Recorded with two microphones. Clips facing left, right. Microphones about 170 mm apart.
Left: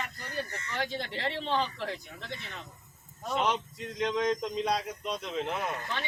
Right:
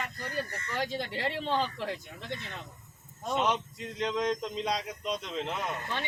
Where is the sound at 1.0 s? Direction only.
15° right (ahead or behind).